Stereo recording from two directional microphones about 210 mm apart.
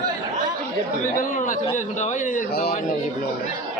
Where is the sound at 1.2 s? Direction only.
40° left (ahead or behind).